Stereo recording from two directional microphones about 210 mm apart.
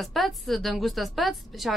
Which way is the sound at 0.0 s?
Centre (ahead or behind).